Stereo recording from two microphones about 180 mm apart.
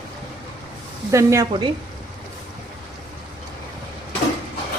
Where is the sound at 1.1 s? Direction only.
15° right (ahead or behind).